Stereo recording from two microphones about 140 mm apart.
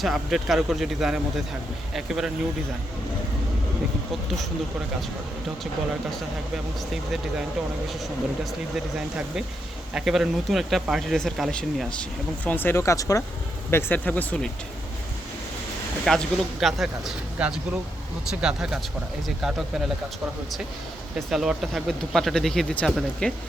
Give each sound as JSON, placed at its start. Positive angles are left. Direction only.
{"t": 0.0, "sound": "speech", "side_deg": 0}
{"t": 6.9, "sound": "speech", "side_deg": 0}
{"t": 8.7, "sound": "speech", "side_deg": -5}
{"t": 12.5, "sound": "speech", "side_deg": 15}
{"t": 16.0, "sound": "speech", "side_deg": 0}
{"t": 21.2, "sound": "speech", "side_deg": -5}